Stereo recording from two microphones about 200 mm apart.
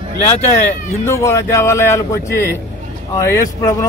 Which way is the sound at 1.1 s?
15° left (ahead or behind).